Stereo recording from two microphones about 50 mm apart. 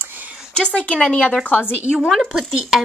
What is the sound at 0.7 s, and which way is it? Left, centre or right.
Speech, left.